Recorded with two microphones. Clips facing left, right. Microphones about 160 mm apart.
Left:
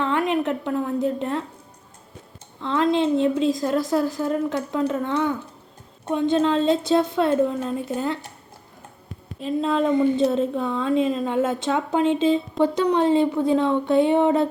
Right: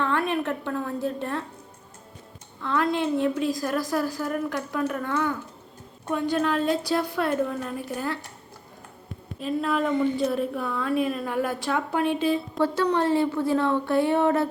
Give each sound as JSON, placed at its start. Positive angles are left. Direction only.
{"t": 0.0, "sound": "a woman's voice", "side_deg": 15}
{"t": 2.6, "sound": "a woman's voice", "side_deg": 20}
{"t": 9.4, "sound": "a woman's voice", "side_deg": 25}